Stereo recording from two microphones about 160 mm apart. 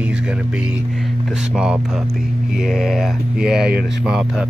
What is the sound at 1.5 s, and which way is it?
Speech, 5° right (ahead or behind).